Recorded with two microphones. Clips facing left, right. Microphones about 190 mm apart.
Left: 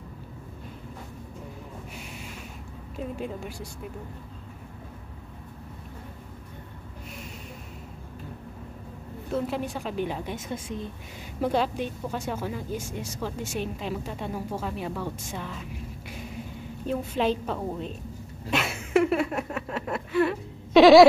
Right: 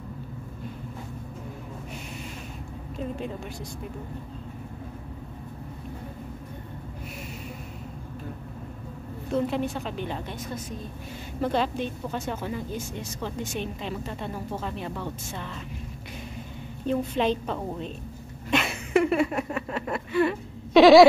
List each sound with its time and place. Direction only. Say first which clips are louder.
3.0 s speech: even; 5° left (ahead or behind)
9.3 s speech: right 3 dB; 5° left (ahead or behind)
10.5 s a woman's voice: left 3 dB; 20° left (ahead or behind)
11.4 s speech: even; 10° left (ahead or behind)
16.8 s a woman's voice: right 1 dB; 5° left (ahead or behind)
18.5 s a sound: right 1 dB; 5° left (ahead or behind)